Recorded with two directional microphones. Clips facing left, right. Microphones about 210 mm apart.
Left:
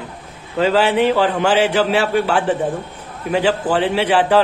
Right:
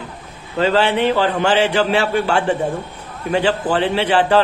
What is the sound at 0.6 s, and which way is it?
A man's voice, 5° left (ahead or behind).